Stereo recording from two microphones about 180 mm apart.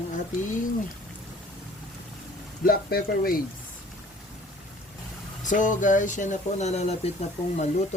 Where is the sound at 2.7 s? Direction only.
55° left (ahead or behind).